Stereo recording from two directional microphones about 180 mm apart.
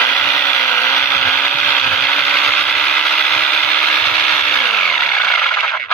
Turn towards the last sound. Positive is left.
turn(degrees=5)  # may be behind; listen again after turning